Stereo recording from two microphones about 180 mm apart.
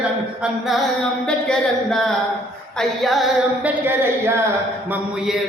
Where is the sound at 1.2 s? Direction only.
5° left (ahead or behind).